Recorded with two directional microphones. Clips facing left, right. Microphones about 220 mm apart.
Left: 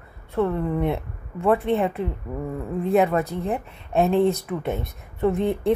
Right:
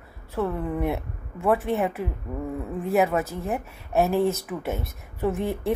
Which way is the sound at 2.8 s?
Centre (ahead or behind).